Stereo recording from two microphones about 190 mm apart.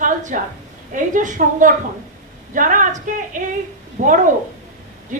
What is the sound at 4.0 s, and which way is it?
A woman's voice, 40° right (ahead or behind).